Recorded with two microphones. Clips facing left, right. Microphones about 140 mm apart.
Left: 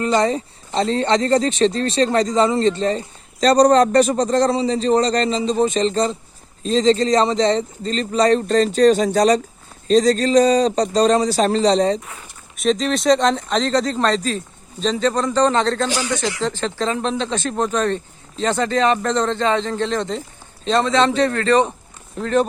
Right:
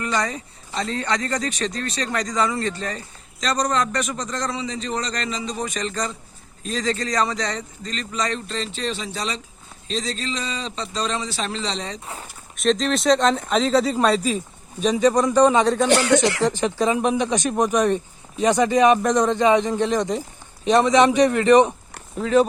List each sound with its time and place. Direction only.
0.2 s speech: 30° left (ahead or behind)
12.5 s speech: centre (ahead or behind)
15.9 s speech: 70° right (ahead or behind)
16.4 s speech: 15° right (ahead or behind)
22.2 s speech: 5° right (ahead or behind)